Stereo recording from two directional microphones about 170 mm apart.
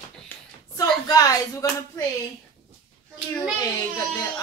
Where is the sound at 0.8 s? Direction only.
20° left (ahead or behind).